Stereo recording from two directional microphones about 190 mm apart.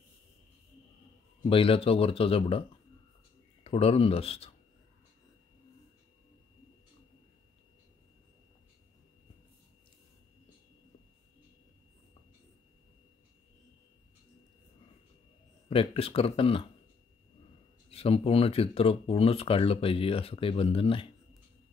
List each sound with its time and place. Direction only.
1.4 s speech: 30° left (ahead or behind)
3.6 s speech: 30° left (ahead or behind)
15.7 s speech: 30° left (ahead or behind)
17.8 s speech: 30° left (ahead or behind)